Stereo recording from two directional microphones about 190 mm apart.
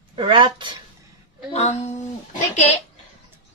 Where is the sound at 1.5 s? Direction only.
35° left (ahead or behind).